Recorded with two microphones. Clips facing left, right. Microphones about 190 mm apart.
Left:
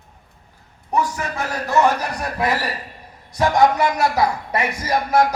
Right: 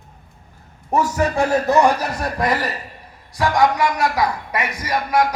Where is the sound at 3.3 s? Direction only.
20° left (ahead or behind).